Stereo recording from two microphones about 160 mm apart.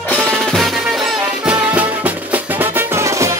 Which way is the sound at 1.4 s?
10° right (ahead or behind).